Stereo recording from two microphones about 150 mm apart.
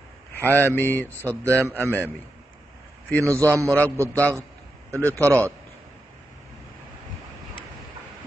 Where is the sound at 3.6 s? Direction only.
10° left (ahead or behind).